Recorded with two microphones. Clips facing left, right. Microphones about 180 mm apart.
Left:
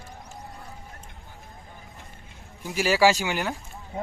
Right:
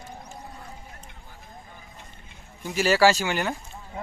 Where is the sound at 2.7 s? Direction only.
10° left (ahead or behind).